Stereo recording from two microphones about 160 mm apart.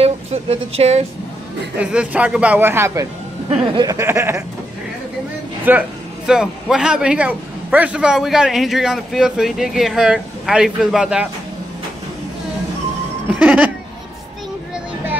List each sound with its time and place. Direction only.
0.0 s speech: 40° right (ahead or behind)
1.8 s speech: 5° right (ahead or behind)
3.4 s a sound: 30° right (ahead or behind)
3.9 s speech: 15° right (ahead or behind)
5.7 s a man's voice: 5° right (ahead or behind)
13.4 s a sound: 10° right (ahead or behind)